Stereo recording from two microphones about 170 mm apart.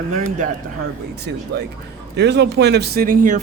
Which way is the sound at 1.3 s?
85° right.